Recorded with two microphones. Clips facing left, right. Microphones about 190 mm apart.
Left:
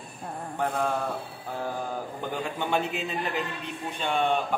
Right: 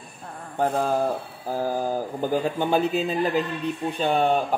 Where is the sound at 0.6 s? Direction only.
35° right (ahead or behind).